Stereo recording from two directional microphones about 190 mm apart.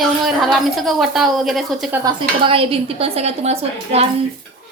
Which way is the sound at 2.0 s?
30° right (ahead or behind).